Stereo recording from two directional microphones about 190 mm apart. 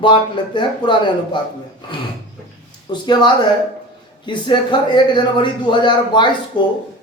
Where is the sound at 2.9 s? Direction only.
25° left (ahead or behind).